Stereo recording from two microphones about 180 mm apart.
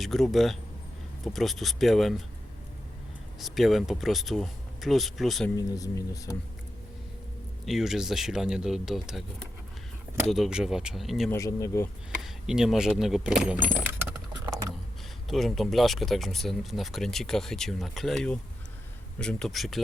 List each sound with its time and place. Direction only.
0.0 s speech: centre (ahead or behind)
3.4 s speech: centre (ahead or behind)
5.5 s speech: 20° left (ahead or behind)
7.6 s speech: centre (ahead or behind)
10.2 s speech: centre (ahead or behind)
11.3 s speech: 15° left (ahead or behind)
12.2 s speech: centre (ahead or behind)
14.4 s a sound: 15° right (ahead or behind)
15.3 s speech: centre (ahead or behind)